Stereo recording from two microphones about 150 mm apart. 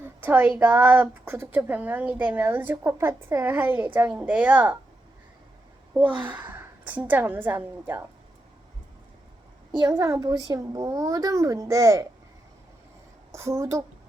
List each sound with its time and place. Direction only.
0.0 s a woman's voice: 15° right (ahead or behind)
6.1 s a woman's voice: 10° right (ahead or behind)
9.9 s a woman's voice: 20° right (ahead or behind)
13.3 s a woman's voice: 20° right (ahead or behind)